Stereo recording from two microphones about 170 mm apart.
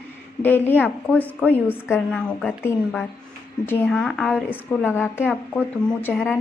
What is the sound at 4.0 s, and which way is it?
A woman's voice, centre (ahead or behind).